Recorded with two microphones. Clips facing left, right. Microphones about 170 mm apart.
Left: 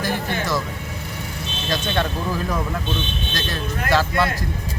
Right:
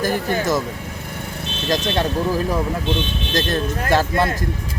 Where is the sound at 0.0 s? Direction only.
45° right (ahead or behind).